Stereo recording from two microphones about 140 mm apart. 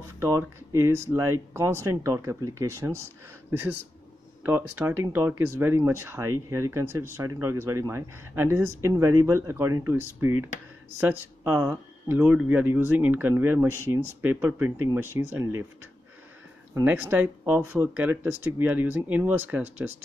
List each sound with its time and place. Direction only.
0.2 s speech: 20° right (ahead or behind)
16.8 s speech: 10° right (ahead or behind)